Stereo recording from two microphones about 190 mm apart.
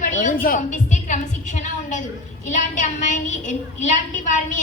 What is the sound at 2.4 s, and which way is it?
A woman's voice, 40° left (ahead or behind).